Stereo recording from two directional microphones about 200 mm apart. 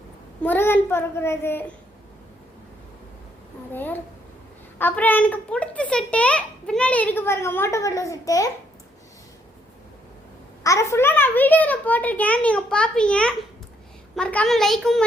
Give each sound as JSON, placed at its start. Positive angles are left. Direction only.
{"t": 0.4, "sound": "a child's voice", "side_deg": 10}
{"t": 3.7, "sound": "a child's voice", "side_deg": 10}
{"t": 10.6, "sound": "a child's voice", "side_deg": 15}